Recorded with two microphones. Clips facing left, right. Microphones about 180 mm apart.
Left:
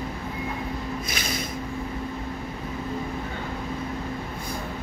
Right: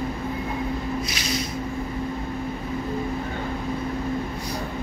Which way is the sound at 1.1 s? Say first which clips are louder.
Right 2 dB; 50° left (ahead or behind).